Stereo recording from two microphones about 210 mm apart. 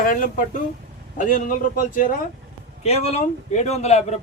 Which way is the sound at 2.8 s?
30° left (ahead or behind).